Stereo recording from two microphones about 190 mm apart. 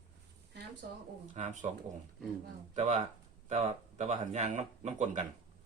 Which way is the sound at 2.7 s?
40° right (ahead or behind).